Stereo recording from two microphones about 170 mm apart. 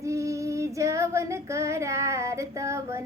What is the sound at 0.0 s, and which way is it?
Child singing, 20° right (ahead or behind).